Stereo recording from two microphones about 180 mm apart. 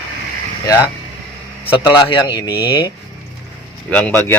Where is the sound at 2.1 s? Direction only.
25° left (ahead or behind).